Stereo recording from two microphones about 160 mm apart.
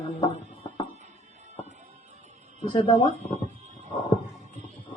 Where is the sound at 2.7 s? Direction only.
30° left (ahead or behind).